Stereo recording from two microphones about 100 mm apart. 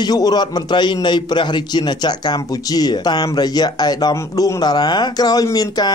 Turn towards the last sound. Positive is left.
turn(degrees=40)  # may be behind; listen again after turning